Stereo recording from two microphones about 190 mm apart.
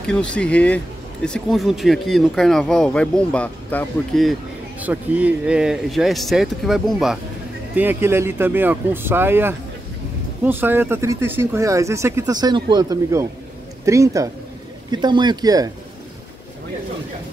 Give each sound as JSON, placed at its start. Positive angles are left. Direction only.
{"t": 0.0, "sound": "speech", "side_deg": 5}